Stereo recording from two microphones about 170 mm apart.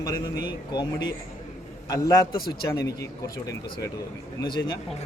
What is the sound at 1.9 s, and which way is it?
Speech, 20° left (ahead or behind).